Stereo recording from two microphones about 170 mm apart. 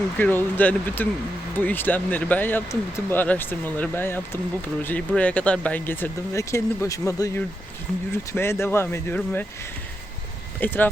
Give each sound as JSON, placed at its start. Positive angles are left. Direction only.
{"t": 0.2, "sound": "speech", "side_deg": 10}
{"t": 10.6, "sound": "speech", "side_deg": 10}